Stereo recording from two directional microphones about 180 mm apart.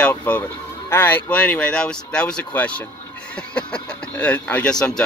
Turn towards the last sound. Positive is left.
turn(degrees=5)  # may be behind; listen again after turning